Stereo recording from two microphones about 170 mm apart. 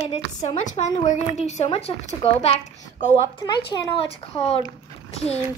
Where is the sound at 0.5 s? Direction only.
45° left (ahead or behind).